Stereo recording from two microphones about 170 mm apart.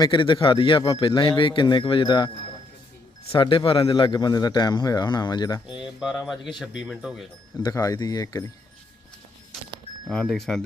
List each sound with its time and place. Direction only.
0.0 s a man's voice: 30° left (ahead or behind)
3.3 s a man's voice: 30° left (ahead or behind)
5.6 s speech: centre (ahead or behind)
7.6 s a man's voice: 20° left (ahead or behind)
10.1 s speech: 5° left (ahead or behind)